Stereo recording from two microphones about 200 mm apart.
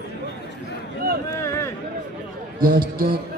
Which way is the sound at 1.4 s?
15° left (ahead or behind).